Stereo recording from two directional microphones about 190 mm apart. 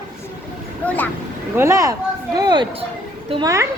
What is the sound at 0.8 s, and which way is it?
Speech, 10° left (ahead or behind).